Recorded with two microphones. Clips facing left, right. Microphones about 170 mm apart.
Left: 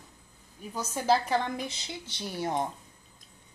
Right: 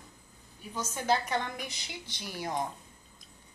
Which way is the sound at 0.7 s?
35° left (ahead or behind).